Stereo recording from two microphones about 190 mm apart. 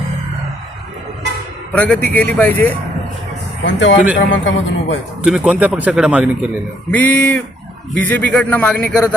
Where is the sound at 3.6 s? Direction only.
75° left (ahead or behind).